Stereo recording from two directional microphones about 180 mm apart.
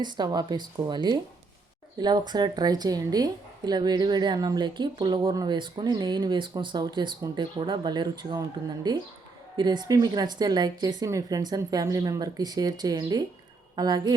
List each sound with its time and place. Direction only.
0.0 s speech: 25° right (ahead or behind)